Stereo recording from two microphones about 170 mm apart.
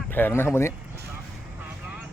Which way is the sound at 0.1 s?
15° left (ahead or behind).